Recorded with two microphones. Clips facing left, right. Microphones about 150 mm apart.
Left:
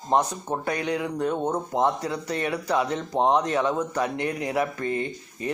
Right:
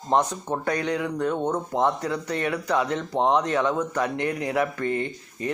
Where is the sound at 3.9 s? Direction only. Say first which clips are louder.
Right 1 dB; 30° left (ahead or behind).